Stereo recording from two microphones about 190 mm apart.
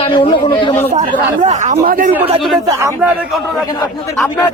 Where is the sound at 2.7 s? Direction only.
15° right (ahead or behind).